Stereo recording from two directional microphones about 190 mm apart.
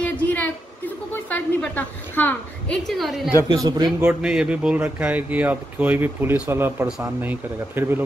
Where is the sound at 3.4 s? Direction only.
20° right (ahead or behind).